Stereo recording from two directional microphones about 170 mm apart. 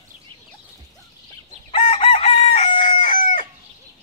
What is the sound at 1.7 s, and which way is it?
Chicken, 35° left (ahead or behind).